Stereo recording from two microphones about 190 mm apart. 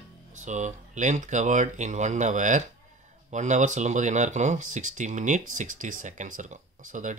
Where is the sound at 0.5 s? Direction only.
40° right (ahead or behind).